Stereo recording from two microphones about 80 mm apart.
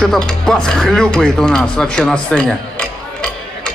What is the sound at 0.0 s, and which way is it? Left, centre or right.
Speech, centre.